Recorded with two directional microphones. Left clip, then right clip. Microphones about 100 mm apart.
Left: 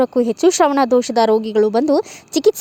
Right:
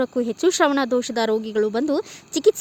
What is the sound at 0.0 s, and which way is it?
Speech, 25° left (ahead or behind).